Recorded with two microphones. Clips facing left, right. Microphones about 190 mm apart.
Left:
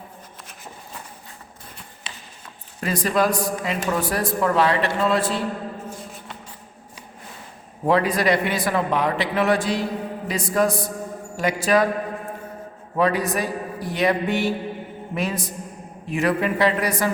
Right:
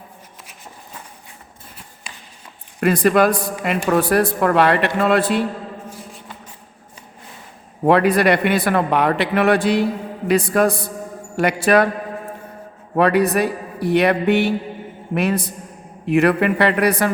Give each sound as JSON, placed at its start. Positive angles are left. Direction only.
{"t": 2.8, "sound": "a man's voice", "side_deg": -60}
{"t": 7.9, "sound": "a man's voice", "side_deg": -65}
{"t": 13.0, "sound": "a man's voice", "side_deg": -65}